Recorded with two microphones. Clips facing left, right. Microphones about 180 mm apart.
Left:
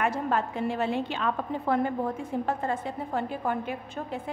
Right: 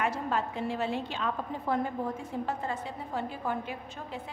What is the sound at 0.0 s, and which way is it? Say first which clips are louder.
A woman's voice: left 3 dB; 55° left (ahead or behind).